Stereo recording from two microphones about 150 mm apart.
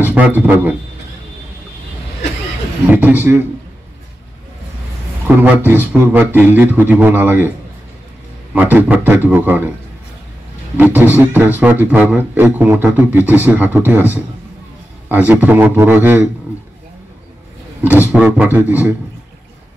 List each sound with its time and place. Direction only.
0.0 s a man's voice: 10° right (ahead or behind)
2.9 s speech: 10° right (ahead or behind)
5.2 s speech: 15° right (ahead or behind)
8.5 s speech: 10° right (ahead or behind)
10.8 s speech: 10° right (ahead or behind)
18.1 s speech: 10° right (ahead or behind)